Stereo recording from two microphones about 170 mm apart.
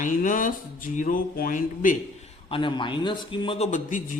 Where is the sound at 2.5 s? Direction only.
30° left (ahead or behind).